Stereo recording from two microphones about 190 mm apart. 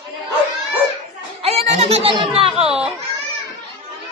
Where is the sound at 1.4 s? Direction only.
30° right (ahead or behind).